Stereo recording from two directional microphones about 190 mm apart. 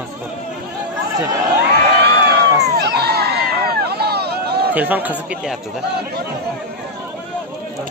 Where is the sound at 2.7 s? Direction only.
60° right (ahead or behind).